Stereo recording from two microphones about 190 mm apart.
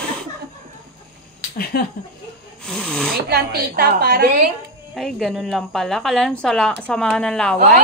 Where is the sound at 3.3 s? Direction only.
55° right (ahead or behind).